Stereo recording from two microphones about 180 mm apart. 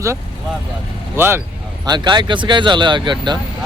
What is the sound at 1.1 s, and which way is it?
Speech, 10° right (ahead or behind).